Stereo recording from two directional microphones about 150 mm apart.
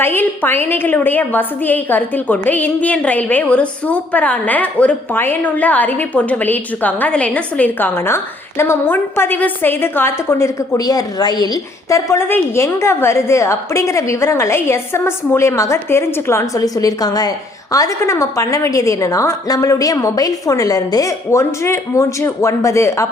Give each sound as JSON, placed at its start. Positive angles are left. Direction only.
{"t": 0.0, "sound": "a woman's voice", "side_deg": 15}